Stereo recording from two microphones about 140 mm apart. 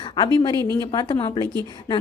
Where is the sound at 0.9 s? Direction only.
30° left (ahead or behind).